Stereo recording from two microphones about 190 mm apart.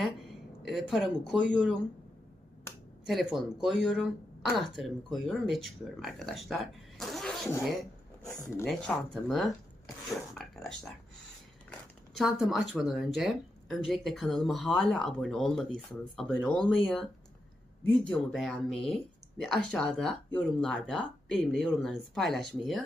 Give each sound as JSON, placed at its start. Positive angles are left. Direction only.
{"t": 0.6, "sound": "speech", "side_deg": 0}
{"t": 3.1, "sound": "speech", "side_deg": 0}
{"t": 8.2, "sound": "speech", "side_deg": 20}
{"t": 9.1, "sound": "speech", "side_deg": 0}
{"t": 10.3, "sound": "a sound", "side_deg": 0}
{"t": 12.1, "sound": "speech", "side_deg": 0}
{"t": 18.1, "sound": "speech", "side_deg": 0}